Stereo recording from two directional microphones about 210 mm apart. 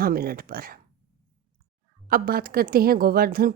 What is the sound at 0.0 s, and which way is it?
Speech, 45° right (ahead or behind).